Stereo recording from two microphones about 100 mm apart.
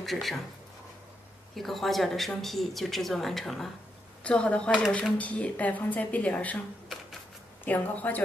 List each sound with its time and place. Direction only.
0.0 s speech: centre (ahead or behind)
1.5 s a woman's voice: centre (ahead or behind)
4.6 s speech: 5° right (ahead or behind)
5.1 s speech: 10° left (ahead or behind)
7.6 s speech: 15° left (ahead or behind)